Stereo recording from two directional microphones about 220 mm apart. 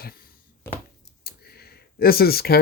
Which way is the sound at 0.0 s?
40° left (ahead or behind).